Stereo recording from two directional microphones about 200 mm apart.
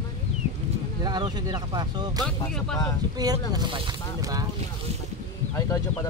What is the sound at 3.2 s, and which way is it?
Speech, 20° right (ahead or behind).